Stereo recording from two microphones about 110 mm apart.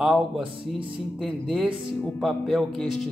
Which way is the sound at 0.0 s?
10° right (ahead or behind).